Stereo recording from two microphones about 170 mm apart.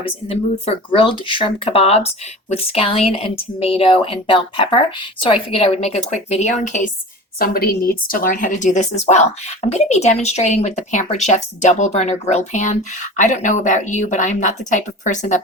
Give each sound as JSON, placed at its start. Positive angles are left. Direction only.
{"t": 0.3, "sound": "a woman's voice", "side_deg": 35}
{"t": 7.3, "sound": "speech", "side_deg": 60}